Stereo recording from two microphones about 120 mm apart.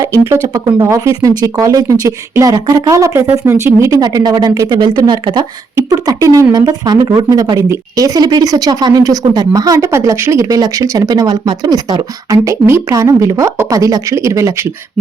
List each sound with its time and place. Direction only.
0.0 s speech: 25° right (ahead or behind)